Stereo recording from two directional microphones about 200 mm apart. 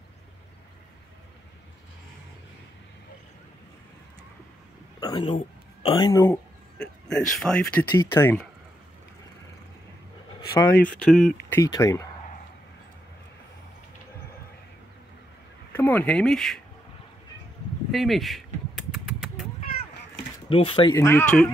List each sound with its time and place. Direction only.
5.0 s a man's voice: 20° left (ahead or behind)
10.7 s speech: 5° left (ahead or behind)
11.5 s speech: 15° left (ahead or behind)
15.7 s speech: 10° left (ahead or behind)
17.9 s mechanisms: centre (ahead or behind)
20.4 s speech: 25° left (ahead or behind)
20.9 s speech: 10° left (ahead or behind)